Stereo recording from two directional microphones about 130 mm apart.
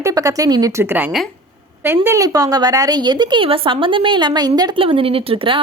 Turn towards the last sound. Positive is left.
turn(degrees=-45)  # may be behind; listen again after turning